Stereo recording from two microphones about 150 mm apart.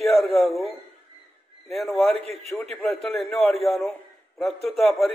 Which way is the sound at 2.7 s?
5° left (ahead or behind).